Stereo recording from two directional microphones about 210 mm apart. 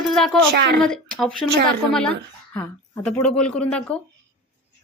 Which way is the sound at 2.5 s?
5° left (ahead or behind).